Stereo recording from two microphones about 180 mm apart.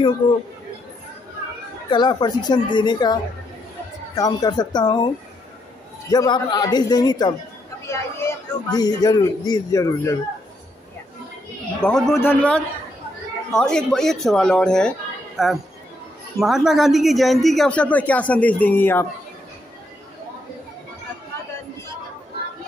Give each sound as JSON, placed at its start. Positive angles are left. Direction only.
{"t": 0.2, "sound": "speech", "side_deg": 30}
{"t": 1.9, "sound": "speech", "side_deg": 25}
{"t": 11.8, "sound": "a man's voice", "side_deg": 5}